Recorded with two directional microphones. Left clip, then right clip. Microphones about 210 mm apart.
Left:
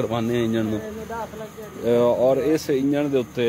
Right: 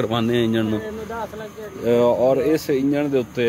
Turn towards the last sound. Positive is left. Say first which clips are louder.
# right 1 dB
turn(degrees=-5)  # may be behind; listen again after turning